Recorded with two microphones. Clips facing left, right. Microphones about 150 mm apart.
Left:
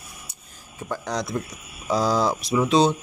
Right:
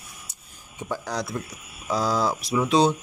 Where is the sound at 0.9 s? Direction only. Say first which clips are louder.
Left 2 dB; 10° right (ahead or behind).